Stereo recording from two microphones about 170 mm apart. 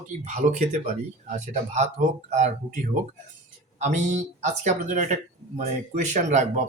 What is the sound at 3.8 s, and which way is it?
Speech, 45° right (ahead or behind).